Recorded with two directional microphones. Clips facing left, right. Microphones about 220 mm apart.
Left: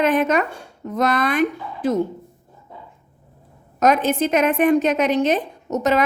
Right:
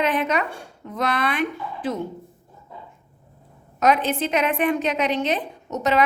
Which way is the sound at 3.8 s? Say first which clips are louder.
Left 3 dB; 45° left (ahead or behind).